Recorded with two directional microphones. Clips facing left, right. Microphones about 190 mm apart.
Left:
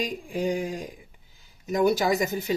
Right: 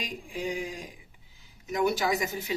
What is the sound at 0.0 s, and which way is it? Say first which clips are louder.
Speech: left 7 dB; 40° left (ahead or behind).